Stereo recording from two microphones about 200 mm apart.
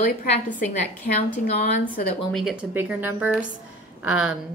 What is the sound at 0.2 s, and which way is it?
Speech, 40° left (ahead or behind).